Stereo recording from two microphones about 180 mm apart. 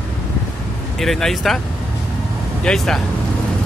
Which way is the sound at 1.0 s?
Centre (ahead or behind).